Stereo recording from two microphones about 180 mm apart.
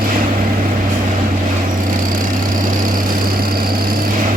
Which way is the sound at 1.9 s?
50° right (ahead or behind).